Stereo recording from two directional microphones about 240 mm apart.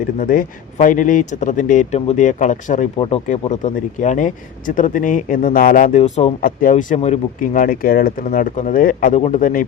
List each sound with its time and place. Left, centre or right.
0.2 s speech: left